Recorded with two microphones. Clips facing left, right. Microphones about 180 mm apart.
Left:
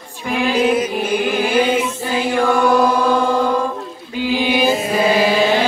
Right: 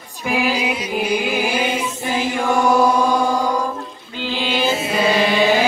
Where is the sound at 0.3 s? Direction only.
5° right (ahead or behind).